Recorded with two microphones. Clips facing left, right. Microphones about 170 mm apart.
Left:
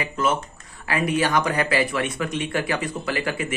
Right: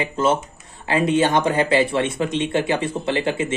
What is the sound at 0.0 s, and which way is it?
Speech, 30° right (ahead or behind).